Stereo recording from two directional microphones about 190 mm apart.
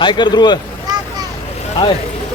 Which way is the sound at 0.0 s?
25° left (ahead or behind).